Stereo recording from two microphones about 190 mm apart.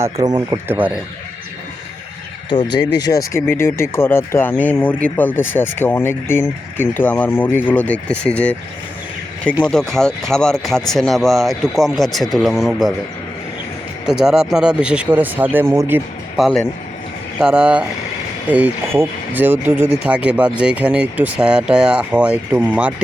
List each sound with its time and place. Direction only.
0.0 s speech: 20° right (ahead or behind)
2.5 s speech: 25° left (ahead or behind); by 8.5 s 5° left (ahead or behind)
9.6 s speech: 5° left (ahead or behind)
14.1 s speech: 5° right (ahead or behind)
16.4 s speech: centre (ahead or behind)